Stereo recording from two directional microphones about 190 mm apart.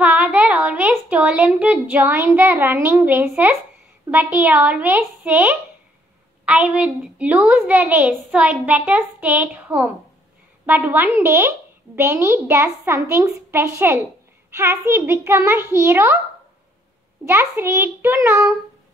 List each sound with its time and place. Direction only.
0.0 s a woman's voice: 10° right (ahead or behind)
17.3 s a woman's voice: 15° right (ahead or behind)